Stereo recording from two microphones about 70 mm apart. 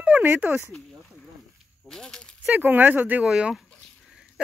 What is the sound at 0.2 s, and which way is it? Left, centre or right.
Speech, right.